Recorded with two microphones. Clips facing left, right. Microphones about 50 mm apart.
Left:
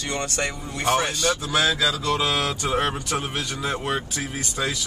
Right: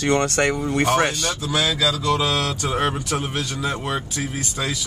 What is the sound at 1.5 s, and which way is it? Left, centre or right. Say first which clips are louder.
Speech: right 3 dB; centre.